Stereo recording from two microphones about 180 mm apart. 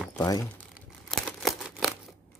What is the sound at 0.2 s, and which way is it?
Speech, 20° left (ahead or behind).